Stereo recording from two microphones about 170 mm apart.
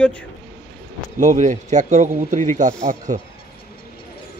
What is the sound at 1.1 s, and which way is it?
Speech, 45° right (ahead or behind).